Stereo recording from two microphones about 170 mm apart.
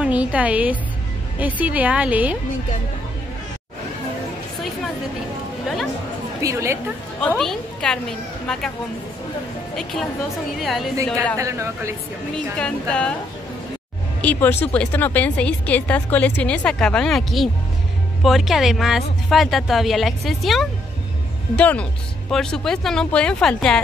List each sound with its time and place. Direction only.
0.0 s a woman's voice: 10° right (ahead or behind)
6.4 s a woman's voice: 15° right (ahead or behind)
7.2 s speech: 5° left (ahead or behind)
10.6 s speech: centre (ahead or behind)
11.3 s a woman's voice: 15° right (ahead or behind)
12.5 s speech: 5° left (ahead or behind)
14.2 s speech: 10° left (ahead or behind)